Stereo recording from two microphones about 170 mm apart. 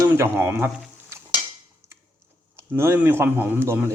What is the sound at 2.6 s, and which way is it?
Speech, 15° right (ahead or behind).